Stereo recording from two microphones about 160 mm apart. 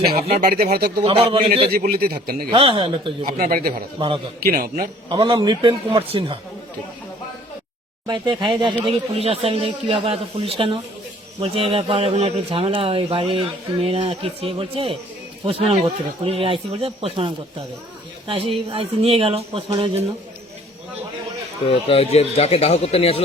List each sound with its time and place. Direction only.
0.2 s speech: 45° right (ahead or behind)
0.4 s speech: 75° right (ahead or behind)
1.0 s a man's voice: 35° right (ahead or behind)
1.8 s speech: 70° right (ahead or behind)
2.5 s a man's voice: 35° right (ahead or behind)
3.2 s a man's voice: 65° right (ahead or behind)
5.0 s a man's voice: 30° right (ahead or behind)
8.0 s a man's voice: 25° right (ahead or behind)
21.7 s speech: 35° left (ahead or behind)